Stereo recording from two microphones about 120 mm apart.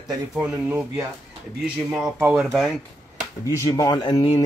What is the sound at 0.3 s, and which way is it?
Speech, 10° right (ahead or behind).